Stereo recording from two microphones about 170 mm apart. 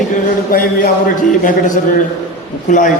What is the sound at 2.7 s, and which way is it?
Speech, 50° left (ahead or behind).